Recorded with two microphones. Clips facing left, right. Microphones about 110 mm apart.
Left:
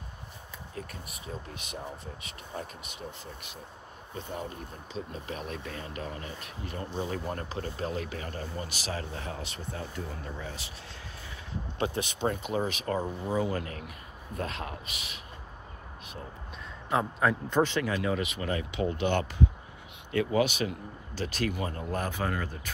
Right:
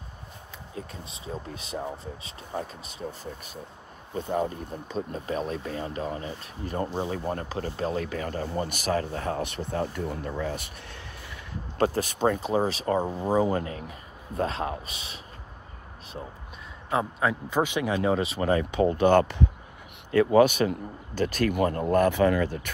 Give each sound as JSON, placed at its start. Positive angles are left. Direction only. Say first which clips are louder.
{"t": 0.7, "sound": "speech", "louder": "right 3 dB", "side_deg": -25}
{"t": 4.3, "sound": "speech", "louder": "right 11 dB", "side_deg": -45}
{"t": 11.8, "sound": "a man's voice", "louder": "right 6 dB", "side_deg": -40}
{"t": 16.9, "sound": "a man's voice", "louder": "right 1 dB", "side_deg": 0}
{"t": 17.6, "sound": "speech", "louder": "right 3 dB", "side_deg": -15}